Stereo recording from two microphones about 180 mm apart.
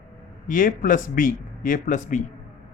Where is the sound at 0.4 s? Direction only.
50° left (ahead or behind).